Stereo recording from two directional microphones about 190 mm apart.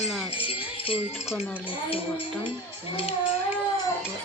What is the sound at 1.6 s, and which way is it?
Speech, 25° left (ahead or behind).